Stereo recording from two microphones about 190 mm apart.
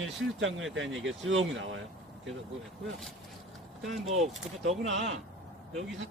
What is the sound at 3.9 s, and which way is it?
Speech, centre (ahead or behind).